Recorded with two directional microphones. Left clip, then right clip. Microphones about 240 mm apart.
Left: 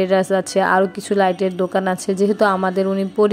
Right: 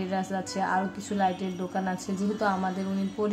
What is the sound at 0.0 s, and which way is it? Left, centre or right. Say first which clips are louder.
A woman's voice: left 15 dB; left.